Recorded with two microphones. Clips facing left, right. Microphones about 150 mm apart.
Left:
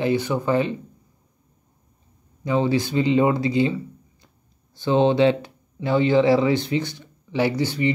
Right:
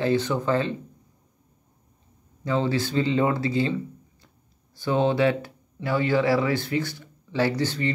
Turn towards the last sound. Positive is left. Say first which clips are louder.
# left 3 dB
turn(degrees=10)  # may be behind; listen again after turning